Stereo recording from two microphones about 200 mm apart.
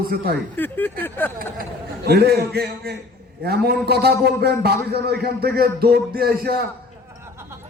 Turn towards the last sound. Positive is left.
turn(degrees=-50)  # may be behind; listen again after turning